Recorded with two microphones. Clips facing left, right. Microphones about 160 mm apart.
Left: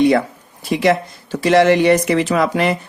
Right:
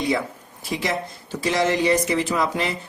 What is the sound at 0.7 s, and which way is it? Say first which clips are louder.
Speech: left 10 dB; 70° left (ahead or behind).